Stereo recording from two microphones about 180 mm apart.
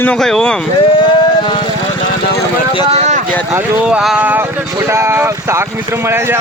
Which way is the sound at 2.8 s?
35° right (ahead or behind).